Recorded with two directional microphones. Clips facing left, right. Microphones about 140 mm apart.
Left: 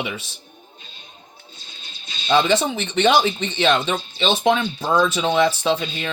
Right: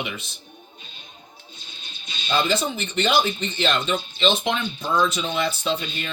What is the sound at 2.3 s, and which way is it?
Speech, 80° left.